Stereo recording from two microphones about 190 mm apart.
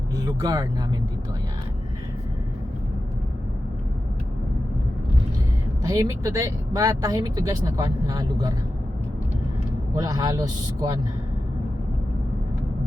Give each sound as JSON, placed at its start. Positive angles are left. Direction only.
{"t": 0.2, "sound": "speech", "side_deg": -20}
{"t": 5.8, "sound": "speech", "side_deg": -20}
{"t": 10.0, "sound": "speech", "side_deg": -20}